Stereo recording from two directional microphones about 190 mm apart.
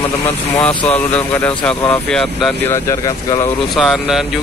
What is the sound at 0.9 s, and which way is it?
Speech, 10° left (ahead or behind).